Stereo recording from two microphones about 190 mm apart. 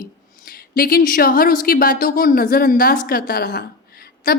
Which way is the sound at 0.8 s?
50° left (ahead or behind).